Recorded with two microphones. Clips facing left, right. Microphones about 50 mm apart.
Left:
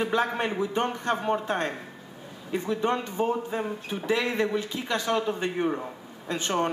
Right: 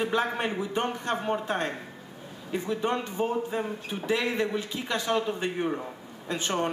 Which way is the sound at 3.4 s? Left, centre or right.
Centre.